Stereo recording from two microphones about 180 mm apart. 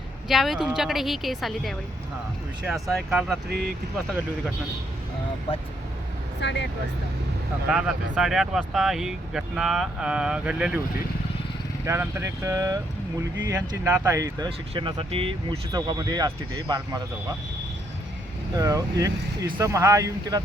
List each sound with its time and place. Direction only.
0.3 s speech: centre (ahead or behind)
2.9 s speech: centre (ahead or behind)
6.4 s speech: 75° left (ahead or behind)
7.7 s speech: 5° right (ahead or behind)
11.9 s speech: 15° right (ahead or behind)
18.5 s speech: 20° right (ahead or behind)